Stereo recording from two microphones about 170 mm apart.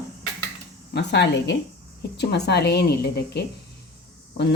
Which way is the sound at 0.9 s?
90° left.